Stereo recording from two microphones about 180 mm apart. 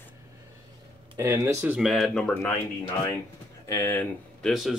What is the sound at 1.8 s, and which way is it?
Speech, centre (ahead or behind).